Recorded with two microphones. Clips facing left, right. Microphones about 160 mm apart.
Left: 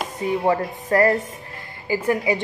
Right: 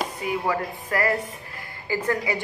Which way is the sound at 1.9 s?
20° left (ahead or behind).